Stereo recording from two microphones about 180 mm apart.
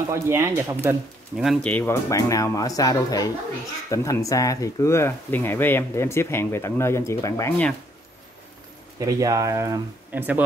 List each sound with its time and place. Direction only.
0.0 s speech: 15° right (ahead or behind)
1.3 s speech: centre (ahead or behind)
1.7 s speech: 10° left (ahead or behind)
9.0 s speech: 20° right (ahead or behind)